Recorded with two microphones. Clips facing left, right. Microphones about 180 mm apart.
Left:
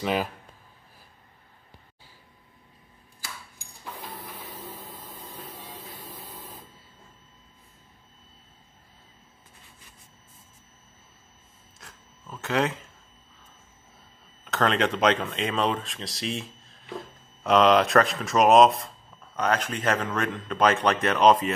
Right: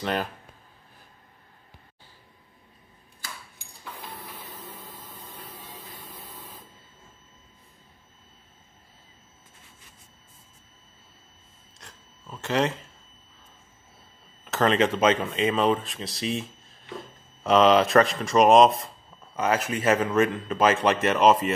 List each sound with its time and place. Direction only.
0.0 s a man's voice: 5° left (ahead or behind)
4.6 s printer: 10° left (ahead or behind)
11.8 s a sound: centre (ahead or behind)
14.4 s a man's voice: centre (ahead or behind)